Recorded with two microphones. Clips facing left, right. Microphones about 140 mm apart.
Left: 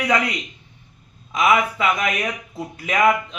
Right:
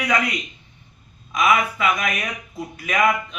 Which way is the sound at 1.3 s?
25° left (ahead or behind).